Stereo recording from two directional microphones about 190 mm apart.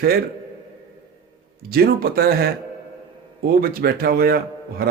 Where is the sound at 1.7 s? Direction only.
50° right (ahead or behind).